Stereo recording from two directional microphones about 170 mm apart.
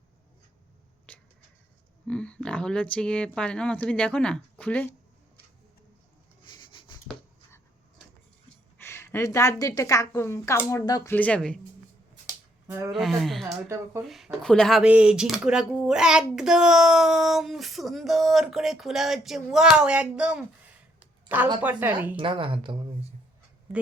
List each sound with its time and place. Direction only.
1.1 s a sound: 10° left (ahead or behind)
2.0 s speech: 5° left (ahead or behind)
6.5 s a sound: 25° left (ahead or behind)
8.8 s a woman's voice: 15° left (ahead or behind)
11.1 s speech: 10° left (ahead or behind)
12.9 s a woman's voice: centre (ahead or behind)
22.1 s a woman's voice: 30° right (ahead or behind)